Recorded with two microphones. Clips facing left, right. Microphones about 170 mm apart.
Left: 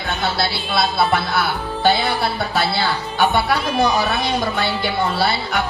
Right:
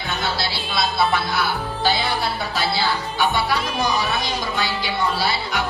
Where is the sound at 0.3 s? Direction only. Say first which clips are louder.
Left 4 dB; 60° left (ahead or behind).